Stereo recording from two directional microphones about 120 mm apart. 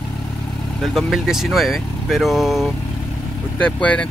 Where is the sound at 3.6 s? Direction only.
10° left (ahead or behind).